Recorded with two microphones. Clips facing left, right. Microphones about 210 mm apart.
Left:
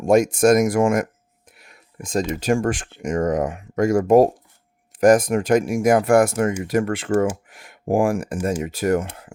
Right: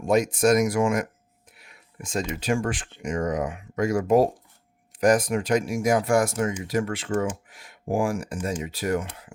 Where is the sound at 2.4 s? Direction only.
45° left (ahead or behind).